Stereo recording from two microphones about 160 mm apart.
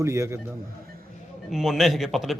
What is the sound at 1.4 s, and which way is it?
Speech, centre (ahead or behind).